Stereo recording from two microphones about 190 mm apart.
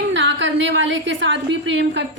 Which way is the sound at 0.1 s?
70° right (ahead or behind).